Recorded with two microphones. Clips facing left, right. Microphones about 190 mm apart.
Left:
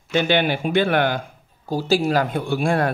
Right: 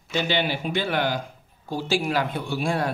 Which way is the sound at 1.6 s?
40° left (ahead or behind).